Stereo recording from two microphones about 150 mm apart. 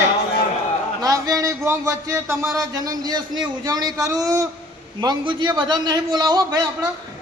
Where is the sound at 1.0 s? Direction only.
25° right (ahead or behind).